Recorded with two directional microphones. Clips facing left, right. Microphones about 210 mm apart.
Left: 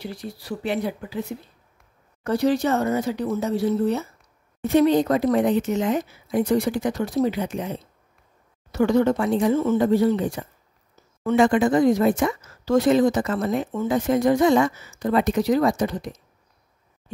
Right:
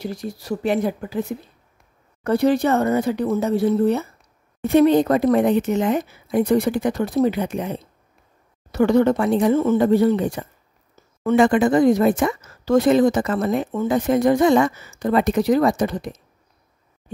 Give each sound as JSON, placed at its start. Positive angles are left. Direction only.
{"t": 0.0, "sound": "speech", "side_deg": -45}
{"t": 2.2, "sound": "speech", "side_deg": -55}